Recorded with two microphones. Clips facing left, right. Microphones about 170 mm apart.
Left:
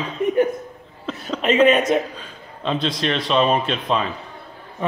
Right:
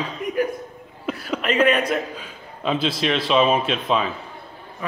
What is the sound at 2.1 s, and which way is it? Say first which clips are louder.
A man's voice: right 1 dB; 5° right (ahead or behind).